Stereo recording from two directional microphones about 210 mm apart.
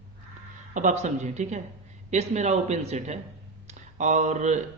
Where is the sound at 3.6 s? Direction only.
35° right (ahead or behind).